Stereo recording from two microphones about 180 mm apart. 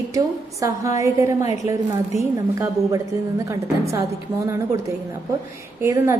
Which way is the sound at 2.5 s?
15° right (ahead or behind).